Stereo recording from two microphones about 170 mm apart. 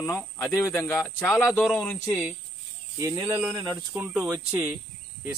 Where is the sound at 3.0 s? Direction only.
20° right (ahead or behind).